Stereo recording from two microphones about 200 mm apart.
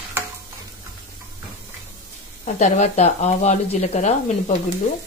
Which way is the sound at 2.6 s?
35° left (ahead or behind).